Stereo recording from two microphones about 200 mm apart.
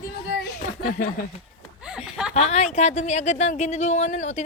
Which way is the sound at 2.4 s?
35° left (ahead or behind).